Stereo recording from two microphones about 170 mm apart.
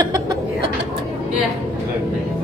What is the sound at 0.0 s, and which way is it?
Chuckle, 20° right (ahead or behind).